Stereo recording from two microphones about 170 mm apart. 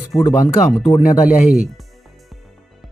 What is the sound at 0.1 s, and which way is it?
Speech, 25° left (ahead or behind).